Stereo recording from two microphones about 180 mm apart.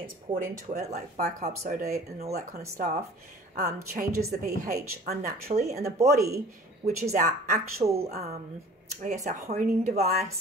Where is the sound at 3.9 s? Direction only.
55° right (ahead or behind).